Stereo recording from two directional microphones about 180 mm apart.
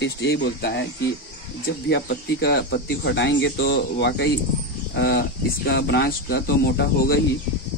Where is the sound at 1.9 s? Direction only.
65° left (ahead or behind).